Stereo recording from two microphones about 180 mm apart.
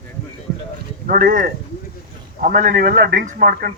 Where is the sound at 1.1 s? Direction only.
50° right (ahead or behind).